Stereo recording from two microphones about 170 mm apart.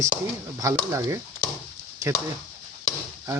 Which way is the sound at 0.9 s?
20° right (ahead or behind).